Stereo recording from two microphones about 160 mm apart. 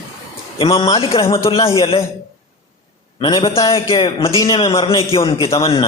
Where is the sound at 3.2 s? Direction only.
30° left (ahead or behind).